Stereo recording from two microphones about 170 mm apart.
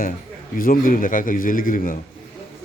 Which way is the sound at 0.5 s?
55° left (ahead or behind).